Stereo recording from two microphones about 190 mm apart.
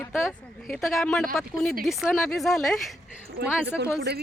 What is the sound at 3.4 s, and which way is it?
Speech, 55° right (ahead or behind).